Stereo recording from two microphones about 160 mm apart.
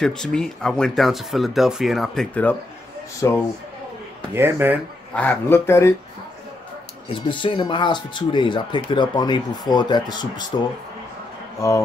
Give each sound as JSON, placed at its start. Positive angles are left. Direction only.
{"t": 0.0, "sound": "speech", "side_deg": 5}
{"t": 3.2, "sound": "speech", "side_deg": 20}
{"t": 4.3, "sound": "speech", "side_deg": -15}
{"t": 5.1, "sound": "speech", "side_deg": 10}
{"t": 7.2, "sound": "speech", "side_deg": 30}